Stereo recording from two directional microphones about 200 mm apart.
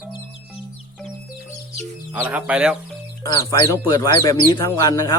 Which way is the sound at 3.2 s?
20° left (ahead or behind).